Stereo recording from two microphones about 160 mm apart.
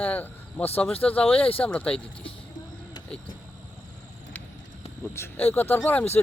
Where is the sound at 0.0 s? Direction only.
10° left (ahead or behind).